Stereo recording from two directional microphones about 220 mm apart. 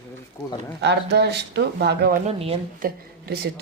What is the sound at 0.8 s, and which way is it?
A woman's voice, 50° right (ahead or behind).